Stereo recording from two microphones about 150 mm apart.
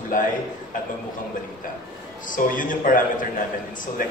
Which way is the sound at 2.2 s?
65° left (ahead or behind).